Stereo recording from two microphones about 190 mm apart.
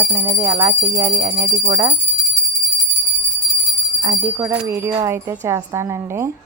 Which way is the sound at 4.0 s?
15° right (ahead or behind).